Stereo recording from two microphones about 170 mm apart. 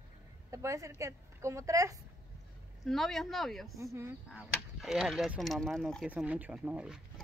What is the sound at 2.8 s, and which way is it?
Speech, centre (ahead or behind).